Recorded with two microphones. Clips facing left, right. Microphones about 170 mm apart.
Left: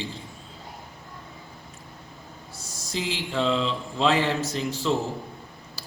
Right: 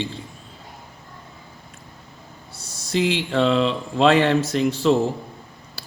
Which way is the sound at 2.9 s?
70° right (ahead or behind).